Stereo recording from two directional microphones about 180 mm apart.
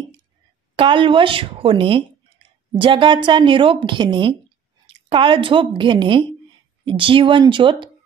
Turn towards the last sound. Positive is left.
turn(degrees=-25)  # may be behind; listen again after turning